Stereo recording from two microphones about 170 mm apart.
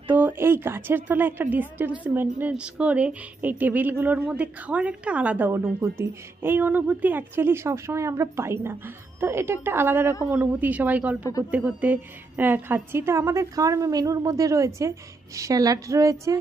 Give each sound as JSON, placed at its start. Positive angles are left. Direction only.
{"t": 0.0, "sound": "a woman's voice", "side_deg": -10}